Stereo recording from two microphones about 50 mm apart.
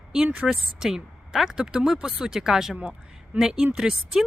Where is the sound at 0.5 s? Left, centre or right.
Centre.